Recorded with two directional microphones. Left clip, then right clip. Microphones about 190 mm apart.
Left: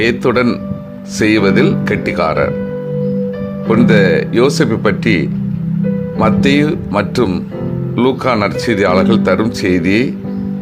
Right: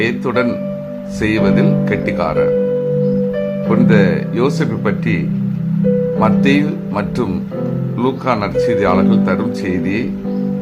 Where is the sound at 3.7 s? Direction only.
25° left (ahead or behind).